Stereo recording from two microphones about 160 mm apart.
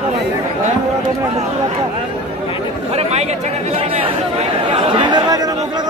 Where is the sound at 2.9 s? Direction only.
40° right (ahead or behind); by 5.8 s 25° right (ahead or behind).